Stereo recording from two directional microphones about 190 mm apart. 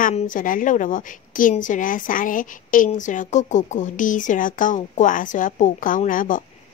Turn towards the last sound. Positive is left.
turn(degrees=45)  # may be behind; listen again after turning